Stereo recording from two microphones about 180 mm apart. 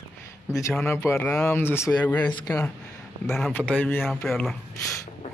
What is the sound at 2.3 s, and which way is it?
Speech, 20° left (ahead or behind).